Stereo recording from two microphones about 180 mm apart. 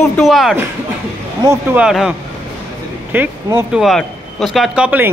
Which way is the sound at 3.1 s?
5° right (ahead or behind).